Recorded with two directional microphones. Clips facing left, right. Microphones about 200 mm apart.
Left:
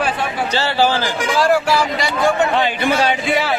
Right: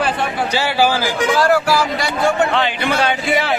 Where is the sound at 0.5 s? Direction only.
10° right (ahead or behind).